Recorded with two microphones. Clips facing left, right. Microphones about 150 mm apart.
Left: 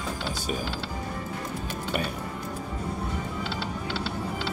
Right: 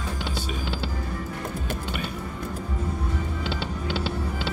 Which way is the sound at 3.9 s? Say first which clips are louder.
Right 2 dB; 65° right (ahead or behind).